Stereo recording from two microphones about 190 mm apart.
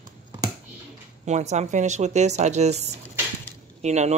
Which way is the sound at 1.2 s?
35° right (ahead or behind).